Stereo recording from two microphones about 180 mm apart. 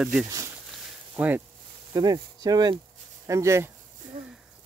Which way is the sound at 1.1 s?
10° right (ahead or behind).